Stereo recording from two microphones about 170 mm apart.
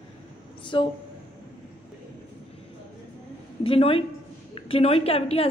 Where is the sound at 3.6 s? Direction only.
35° left (ahead or behind).